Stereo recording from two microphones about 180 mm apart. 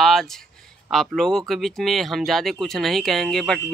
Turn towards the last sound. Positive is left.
turn(degrees=0)  # may be behind; listen again after turning